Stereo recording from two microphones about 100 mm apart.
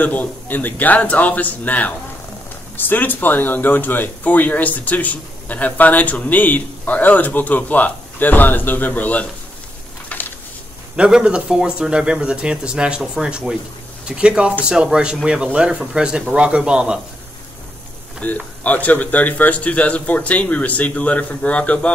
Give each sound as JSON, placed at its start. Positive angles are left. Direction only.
{"t": 0.0, "sound": "speech", "side_deg": 15}
{"t": 10.1, "sound": "a sound", "side_deg": 15}
{"t": 11.0, "sound": "speech", "side_deg": -10}
{"t": 18.2, "sound": "speech", "side_deg": 15}